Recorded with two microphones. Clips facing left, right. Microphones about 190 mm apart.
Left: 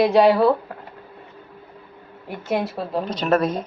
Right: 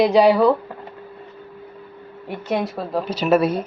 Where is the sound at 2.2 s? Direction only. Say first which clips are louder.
Right 1 dB; centre (ahead or behind).